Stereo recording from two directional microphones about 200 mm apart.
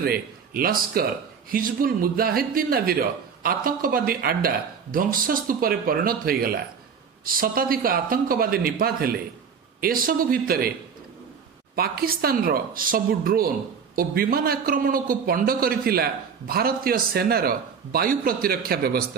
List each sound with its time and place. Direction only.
0.0 s a man's voice: 50° right (ahead or behind)
11.7 s speech: 50° right (ahead or behind)